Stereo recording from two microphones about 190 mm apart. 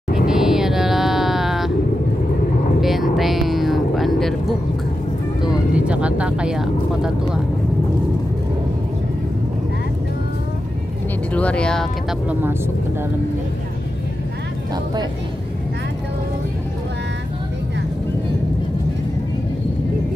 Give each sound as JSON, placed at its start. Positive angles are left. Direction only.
{"t": 0.3, "sound": "music", "side_deg": 0}
{"t": 2.8, "sound": "a sound", "side_deg": 0}
{"t": 3.2, "sound": "music", "side_deg": 0}
{"t": 5.5, "sound": "speech", "side_deg": -5}
{"t": 11.3, "sound": "speech", "side_deg": 5}
{"t": 12.3, "sound": "speech", "side_deg": -10}